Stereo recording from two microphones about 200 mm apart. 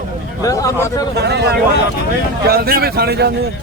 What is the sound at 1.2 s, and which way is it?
Speech, 55° right (ahead or behind).